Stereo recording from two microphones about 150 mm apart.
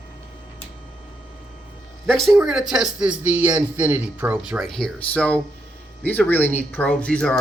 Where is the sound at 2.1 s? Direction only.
Centre (ahead or behind).